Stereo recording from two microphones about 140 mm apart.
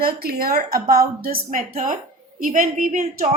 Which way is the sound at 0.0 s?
90° right.